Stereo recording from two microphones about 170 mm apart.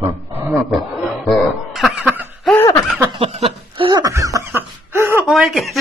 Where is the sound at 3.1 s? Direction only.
35° right (ahead or behind).